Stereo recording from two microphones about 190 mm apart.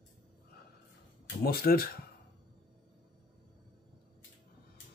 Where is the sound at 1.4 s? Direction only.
55° left (ahead or behind).